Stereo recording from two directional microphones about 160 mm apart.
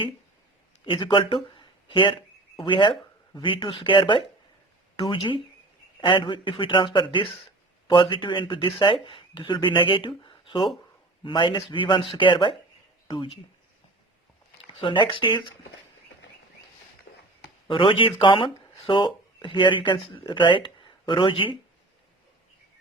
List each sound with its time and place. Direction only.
0.9 s speech: 30° left (ahead or behind)
1.5 s a sound: 30° left (ahead or behind)
2.6 s speech: 30° left (ahead or behind)
14.7 s speech: 30° left (ahead or behind)
17.7 s speech: 30° left (ahead or behind)